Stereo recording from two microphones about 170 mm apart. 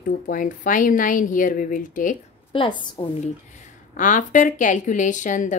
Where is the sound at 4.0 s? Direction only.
50° left (ahead or behind).